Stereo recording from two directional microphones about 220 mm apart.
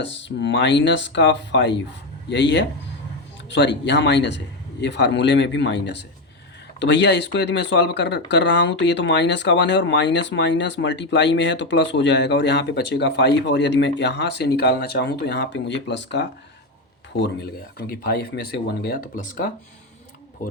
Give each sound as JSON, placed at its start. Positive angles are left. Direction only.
{"t": 0.0, "sound": "speech", "side_deg": 55}